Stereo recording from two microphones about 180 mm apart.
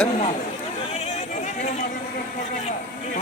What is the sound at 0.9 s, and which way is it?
Chatter, 35° left (ahead or behind).